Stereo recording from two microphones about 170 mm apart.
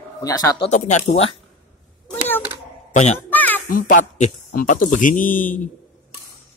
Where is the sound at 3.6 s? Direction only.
55° left (ahead or behind).